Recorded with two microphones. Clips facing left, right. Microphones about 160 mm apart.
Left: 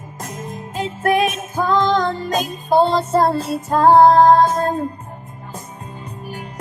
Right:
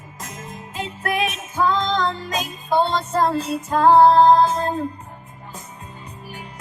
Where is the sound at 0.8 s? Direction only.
45° left (ahead or behind).